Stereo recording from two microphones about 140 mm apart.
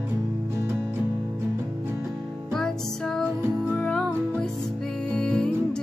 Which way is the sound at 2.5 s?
5° left (ahead or behind).